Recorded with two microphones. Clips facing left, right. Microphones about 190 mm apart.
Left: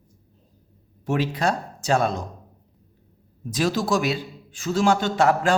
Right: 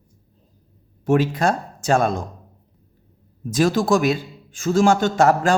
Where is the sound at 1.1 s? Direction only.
50° right (ahead or behind).